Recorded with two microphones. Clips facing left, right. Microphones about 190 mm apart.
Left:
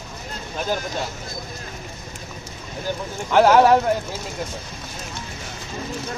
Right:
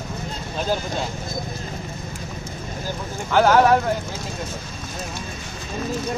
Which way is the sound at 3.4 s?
20° left (ahead or behind).